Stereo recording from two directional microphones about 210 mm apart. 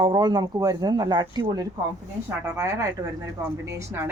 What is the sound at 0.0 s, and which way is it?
A woman's voice, 20° right (ahead or behind).